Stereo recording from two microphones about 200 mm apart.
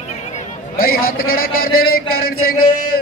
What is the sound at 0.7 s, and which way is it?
A man's voice, 45° left (ahead or behind).